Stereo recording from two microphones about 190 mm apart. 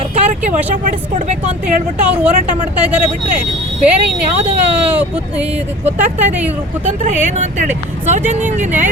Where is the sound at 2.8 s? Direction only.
5° right (ahead or behind).